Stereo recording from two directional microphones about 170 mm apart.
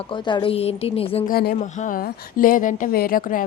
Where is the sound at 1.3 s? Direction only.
65° left (ahead or behind).